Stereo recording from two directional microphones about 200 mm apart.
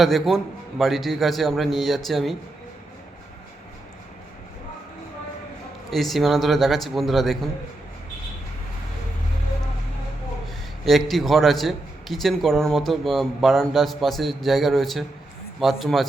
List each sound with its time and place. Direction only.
0.0 s a man's voice: centre (ahead or behind)
5.9 s a man's voice: centre (ahead or behind)
10.8 s a man's voice: centre (ahead or behind)